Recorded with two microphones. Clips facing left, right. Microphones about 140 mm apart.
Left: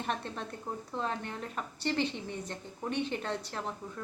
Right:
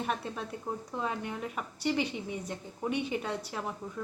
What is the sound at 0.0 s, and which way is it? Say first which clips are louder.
Speech: right 2 dB; 5° right (ahead or behind).